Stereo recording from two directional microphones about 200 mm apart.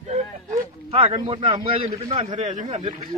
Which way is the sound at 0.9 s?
25° right (ahead or behind).